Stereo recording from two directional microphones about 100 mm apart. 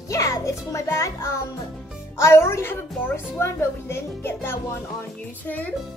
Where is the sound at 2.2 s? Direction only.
25° left (ahead or behind).